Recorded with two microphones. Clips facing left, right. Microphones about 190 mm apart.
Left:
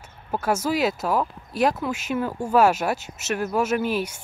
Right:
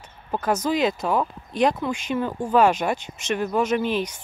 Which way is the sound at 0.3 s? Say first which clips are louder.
Right 1 dB; 10° left (ahead or behind).